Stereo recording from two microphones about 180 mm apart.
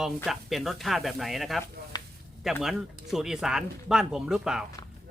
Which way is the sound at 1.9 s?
25° left (ahead or behind).